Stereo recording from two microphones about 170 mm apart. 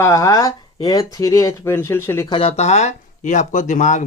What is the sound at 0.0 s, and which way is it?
Speech, 15° left (ahead or behind).